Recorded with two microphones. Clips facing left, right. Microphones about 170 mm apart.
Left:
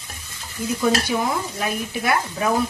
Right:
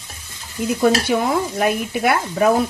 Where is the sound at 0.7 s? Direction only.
60° right (ahead or behind).